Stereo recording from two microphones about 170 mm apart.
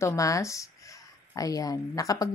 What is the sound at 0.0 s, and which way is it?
Speech, 20° left (ahead or behind).